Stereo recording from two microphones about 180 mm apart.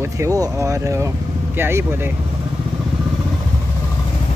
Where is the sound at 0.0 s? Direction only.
15° right (ahead or behind).